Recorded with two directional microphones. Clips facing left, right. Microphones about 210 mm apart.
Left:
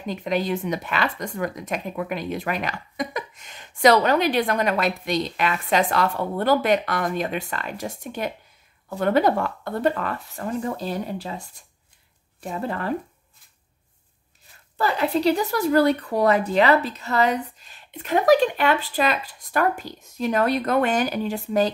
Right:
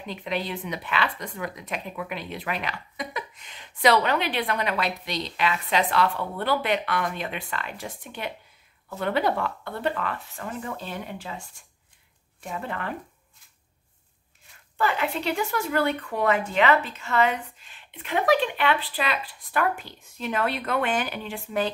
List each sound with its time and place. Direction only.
0.0 s a woman's voice: 45° left (ahead or behind)
14.8 s speech: 35° left (ahead or behind)